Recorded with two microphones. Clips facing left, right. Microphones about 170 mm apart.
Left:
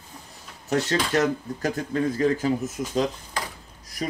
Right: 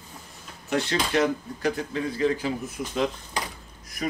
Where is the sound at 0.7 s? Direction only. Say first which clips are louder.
Left 2 dB; 40° left (ahead or behind).